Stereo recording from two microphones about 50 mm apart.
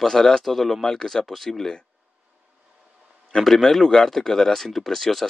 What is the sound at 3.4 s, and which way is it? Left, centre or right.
Speech, centre.